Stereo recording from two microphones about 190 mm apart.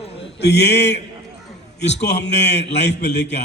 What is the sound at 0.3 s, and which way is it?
A man's voice, 65° left (ahead or behind).